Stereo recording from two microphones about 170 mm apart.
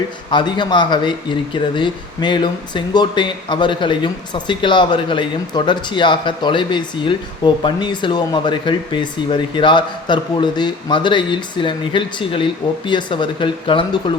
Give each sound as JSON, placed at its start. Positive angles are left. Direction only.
{"t": 0.3, "sound": "speech", "side_deg": 25}